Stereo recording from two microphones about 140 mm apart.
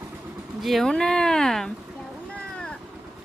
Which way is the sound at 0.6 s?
Centre (ahead or behind).